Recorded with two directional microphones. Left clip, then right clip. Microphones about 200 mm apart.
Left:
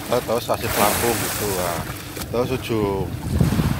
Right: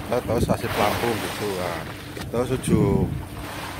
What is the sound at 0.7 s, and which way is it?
Speech, 60° left (ahead or behind).